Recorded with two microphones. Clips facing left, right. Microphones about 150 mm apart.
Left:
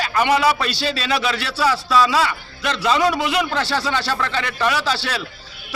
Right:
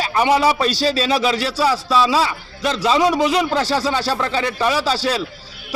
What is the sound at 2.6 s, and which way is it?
Speech, 35° right (ahead or behind).